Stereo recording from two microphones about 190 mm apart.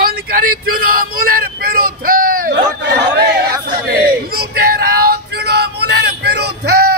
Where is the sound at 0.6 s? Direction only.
50° right (ahead or behind).